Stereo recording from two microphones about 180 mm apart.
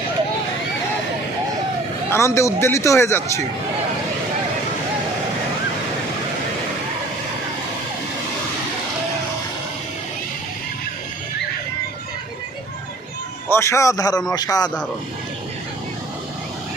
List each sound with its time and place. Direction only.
2.0 s speech: 15° left (ahead or behind)
13.5 s speech: 15° left (ahead or behind)